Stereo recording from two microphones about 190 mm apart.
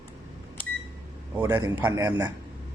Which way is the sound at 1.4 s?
15° right (ahead or behind).